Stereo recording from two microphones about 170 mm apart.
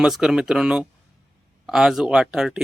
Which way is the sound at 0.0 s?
5° right (ahead or behind).